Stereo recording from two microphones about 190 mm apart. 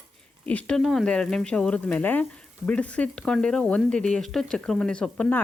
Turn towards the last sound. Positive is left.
turn(degrees=10)  # may be behind; listen again after turning